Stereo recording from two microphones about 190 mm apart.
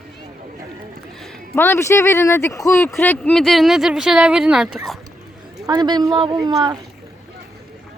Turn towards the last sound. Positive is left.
turn(degrees=-20)  # may be behind; listen again after turning